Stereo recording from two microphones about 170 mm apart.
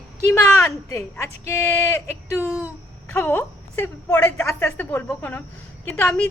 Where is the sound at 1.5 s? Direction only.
15° left (ahead or behind).